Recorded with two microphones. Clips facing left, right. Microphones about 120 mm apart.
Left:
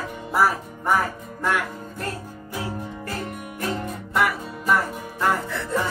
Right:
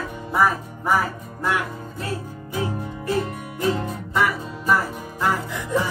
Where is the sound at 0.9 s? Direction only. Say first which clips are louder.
Right 1 dB; 10° right (ahead or behind).